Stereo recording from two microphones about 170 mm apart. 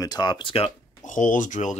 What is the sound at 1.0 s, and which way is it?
Speech, 50° left (ahead or behind).